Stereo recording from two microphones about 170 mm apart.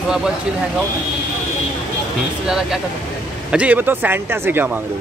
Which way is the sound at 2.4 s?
5° right (ahead or behind).